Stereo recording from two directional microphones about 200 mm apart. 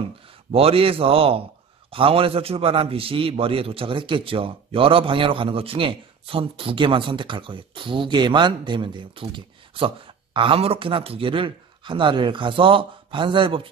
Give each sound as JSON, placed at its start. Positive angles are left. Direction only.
{"t": 0.5, "sound": "a man's voice", "side_deg": -30}